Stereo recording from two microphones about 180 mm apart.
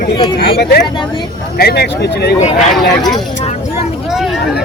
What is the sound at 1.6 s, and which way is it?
Speech, 60° left (ahead or behind).